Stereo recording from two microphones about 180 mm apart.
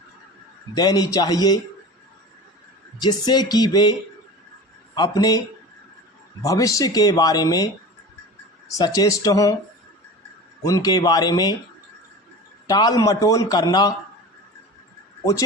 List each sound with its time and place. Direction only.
0.8 s speech: 20° left (ahead or behind)
3.0 s speech: 25° left (ahead or behind)
4.9 s speech: 20° left (ahead or behind)
6.4 s speech: 20° left (ahead or behind)
10.6 s speech: 20° left (ahead or behind)
12.6 s speech: 20° left (ahead or behind)